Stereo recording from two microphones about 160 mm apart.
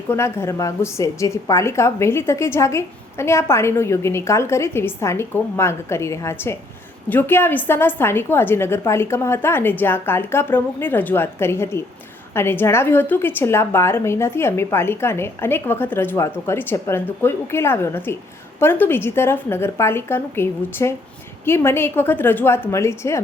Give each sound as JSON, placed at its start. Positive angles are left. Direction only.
{"t": 0.1, "sound": "a woman's voice", "side_deg": 15}